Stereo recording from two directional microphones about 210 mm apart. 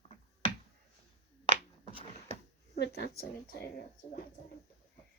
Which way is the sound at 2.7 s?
50° left (ahead or behind).